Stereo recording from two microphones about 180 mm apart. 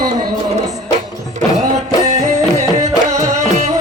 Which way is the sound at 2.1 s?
35° right (ahead or behind).